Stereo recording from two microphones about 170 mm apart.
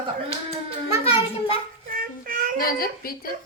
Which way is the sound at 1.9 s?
55° right (ahead or behind).